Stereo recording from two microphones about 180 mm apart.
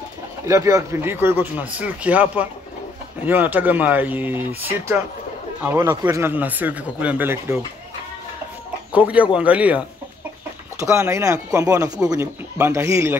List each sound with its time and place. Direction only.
0.5 s speech: 15° right (ahead or behind)
8.9 s speech: 5° right (ahead or behind)